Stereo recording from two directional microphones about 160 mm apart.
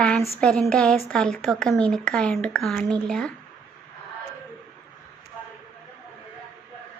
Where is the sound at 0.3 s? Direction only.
5° left (ahead or behind).